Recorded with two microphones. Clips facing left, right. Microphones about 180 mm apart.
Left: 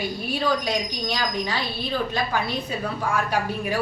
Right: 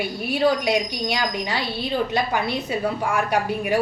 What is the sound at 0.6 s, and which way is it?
A woman's voice, 15° right (ahead or behind).